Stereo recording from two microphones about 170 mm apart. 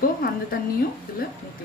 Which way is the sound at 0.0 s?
60° left (ahead or behind).